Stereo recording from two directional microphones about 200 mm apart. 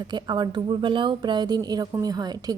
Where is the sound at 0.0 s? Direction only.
20° right (ahead or behind).